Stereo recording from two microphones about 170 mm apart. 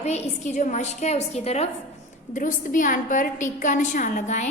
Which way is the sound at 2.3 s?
50° left (ahead or behind).